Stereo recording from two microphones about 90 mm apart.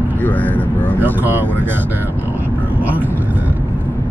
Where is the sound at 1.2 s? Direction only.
20° right (ahead or behind).